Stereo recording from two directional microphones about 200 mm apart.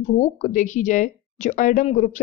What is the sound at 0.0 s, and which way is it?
Speech, 40° left (ahead or behind).